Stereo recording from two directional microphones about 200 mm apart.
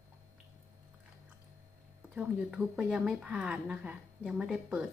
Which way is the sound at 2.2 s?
5° right (ahead or behind).